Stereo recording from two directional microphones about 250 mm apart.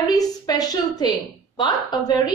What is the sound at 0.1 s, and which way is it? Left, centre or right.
A woman's voice, centre.